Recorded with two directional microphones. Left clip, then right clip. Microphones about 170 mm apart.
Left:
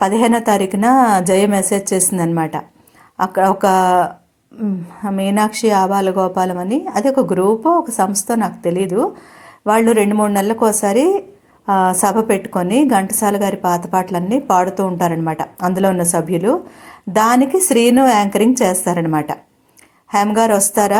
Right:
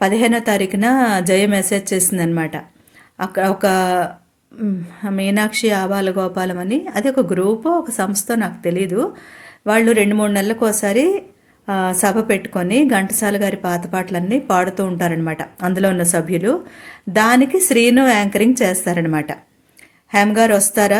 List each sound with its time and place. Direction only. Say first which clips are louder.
0.0 s a woman's voice: left 2 dB; 10° right (ahead or behind)